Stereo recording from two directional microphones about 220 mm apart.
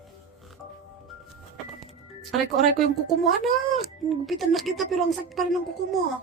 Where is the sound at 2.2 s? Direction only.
Centre (ahead or behind).